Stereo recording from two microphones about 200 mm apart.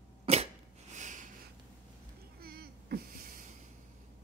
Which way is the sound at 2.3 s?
50° right (ahead or behind).